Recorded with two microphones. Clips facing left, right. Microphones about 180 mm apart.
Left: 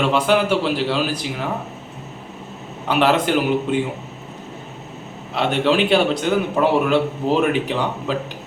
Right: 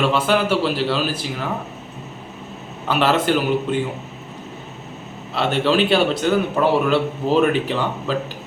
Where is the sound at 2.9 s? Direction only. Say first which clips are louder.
Left 1 dB; 15° left (ahead or behind).